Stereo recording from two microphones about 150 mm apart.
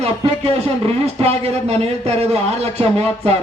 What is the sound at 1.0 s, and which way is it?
A man's voice, 45° right (ahead or behind).